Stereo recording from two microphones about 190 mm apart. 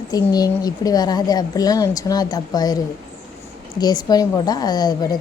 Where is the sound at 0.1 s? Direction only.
20° left (ahead or behind).